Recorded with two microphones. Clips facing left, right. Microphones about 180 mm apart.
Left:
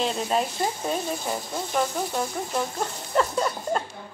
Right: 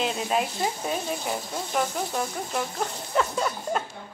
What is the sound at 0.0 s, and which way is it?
Speech, 5° right (ahead or behind).